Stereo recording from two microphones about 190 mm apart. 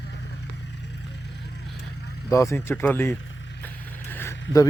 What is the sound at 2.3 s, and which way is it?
Speech, 15° left (ahead or behind).